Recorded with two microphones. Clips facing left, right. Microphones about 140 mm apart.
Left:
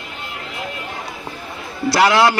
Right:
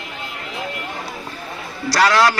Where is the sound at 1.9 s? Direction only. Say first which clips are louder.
Left 1 dB; 20° left (ahead or behind).